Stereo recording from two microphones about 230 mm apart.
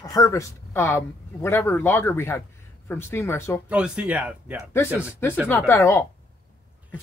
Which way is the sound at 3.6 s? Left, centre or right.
Centre.